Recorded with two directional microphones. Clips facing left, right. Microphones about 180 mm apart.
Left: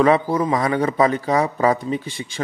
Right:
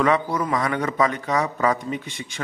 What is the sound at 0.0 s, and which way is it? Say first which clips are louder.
A man's voice: left 4 dB; 35° left (ahead or behind).